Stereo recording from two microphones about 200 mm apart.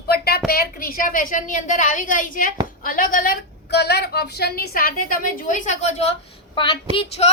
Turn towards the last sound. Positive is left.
turn(degrees=30)  # may be behind; listen again after turning